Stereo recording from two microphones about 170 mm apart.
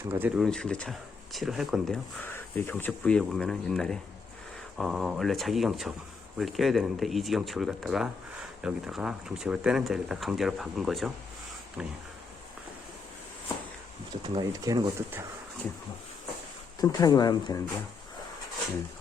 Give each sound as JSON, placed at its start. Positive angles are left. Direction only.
{"t": 0.0, "sound": "speech", "side_deg": -15}
{"t": 0.4, "sound": "speech", "side_deg": 5}
{"t": 2.2, "sound": "speech", "side_deg": 10}
{"t": 14.3, "sound": "speech", "side_deg": -20}
{"t": 16.8, "sound": "speech", "side_deg": 20}